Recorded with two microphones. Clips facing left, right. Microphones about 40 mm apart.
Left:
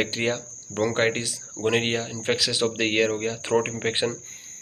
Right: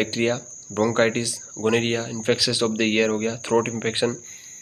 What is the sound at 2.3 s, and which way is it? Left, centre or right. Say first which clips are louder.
Speech: right 2 dB; left.